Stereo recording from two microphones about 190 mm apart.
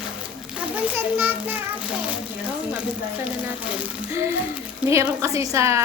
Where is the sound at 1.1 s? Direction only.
10° right (ahead or behind).